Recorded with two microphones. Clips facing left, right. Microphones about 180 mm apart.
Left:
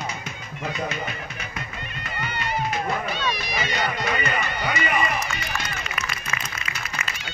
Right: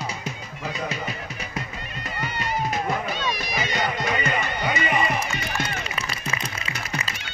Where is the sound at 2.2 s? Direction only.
40° right (ahead or behind).